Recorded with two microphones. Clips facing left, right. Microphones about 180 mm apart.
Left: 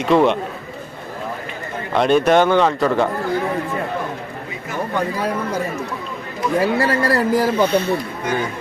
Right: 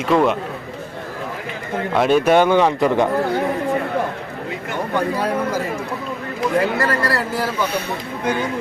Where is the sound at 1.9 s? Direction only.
5° right (ahead or behind).